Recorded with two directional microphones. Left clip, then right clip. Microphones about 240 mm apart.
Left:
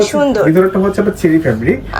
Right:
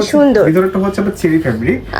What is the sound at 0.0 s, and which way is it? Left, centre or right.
Speech, centre.